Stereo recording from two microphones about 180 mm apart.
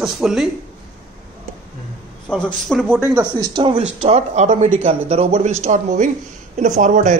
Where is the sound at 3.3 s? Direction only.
25° right (ahead or behind).